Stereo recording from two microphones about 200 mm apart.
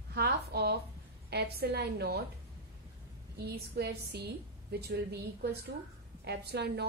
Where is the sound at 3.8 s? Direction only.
55° right (ahead or behind).